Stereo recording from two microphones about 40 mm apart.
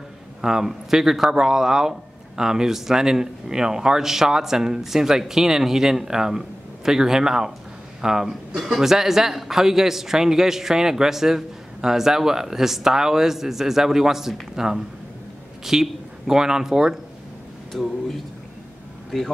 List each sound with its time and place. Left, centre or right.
0.4 s speech: centre